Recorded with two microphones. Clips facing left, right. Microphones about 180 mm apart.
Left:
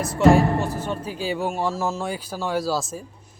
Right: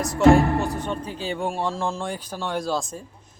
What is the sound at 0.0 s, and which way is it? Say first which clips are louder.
Speech: even; centre (ahead or behind).